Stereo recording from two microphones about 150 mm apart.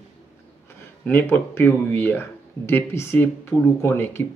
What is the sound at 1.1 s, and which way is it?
Speech, 10° left (ahead or behind).